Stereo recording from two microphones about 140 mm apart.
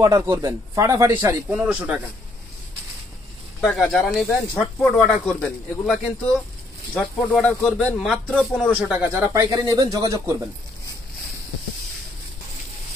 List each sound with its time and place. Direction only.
0.0 s speech: 25° right (ahead or behind)
1.5 s speech: 10° right (ahead or behind)
3.6 s speech: centre (ahead or behind)
9.1 s speech: 20° right (ahead or behind)